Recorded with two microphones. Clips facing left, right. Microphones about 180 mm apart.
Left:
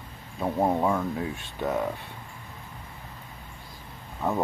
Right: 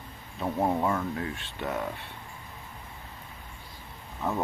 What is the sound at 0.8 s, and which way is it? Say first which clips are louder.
Speech: left 3 dB; 5° left (ahead or behind).